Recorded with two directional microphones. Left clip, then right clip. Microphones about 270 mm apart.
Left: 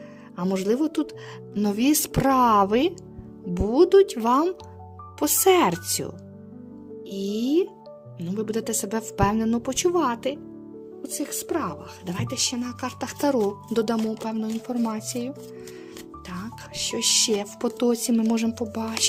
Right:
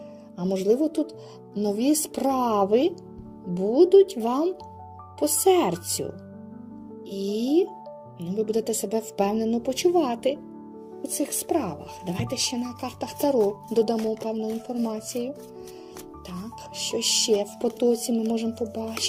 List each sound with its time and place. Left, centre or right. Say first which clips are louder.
0.3 s speech: right 1 dB; left
7.1 s speech: even; centre
16.7 s speech: left 2 dB; left
18.4 s speech: left 1 dB; left